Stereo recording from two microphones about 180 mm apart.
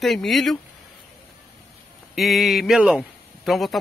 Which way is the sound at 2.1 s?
Centre (ahead or behind).